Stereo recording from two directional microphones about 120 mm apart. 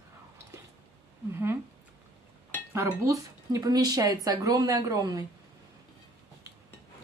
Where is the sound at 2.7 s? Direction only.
25° right (ahead or behind).